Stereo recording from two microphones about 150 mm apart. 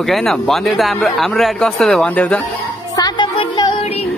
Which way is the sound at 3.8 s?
45° left (ahead or behind).